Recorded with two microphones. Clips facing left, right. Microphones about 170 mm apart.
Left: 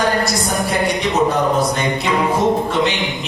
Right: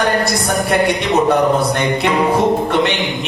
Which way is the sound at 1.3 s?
65° right (ahead or behind).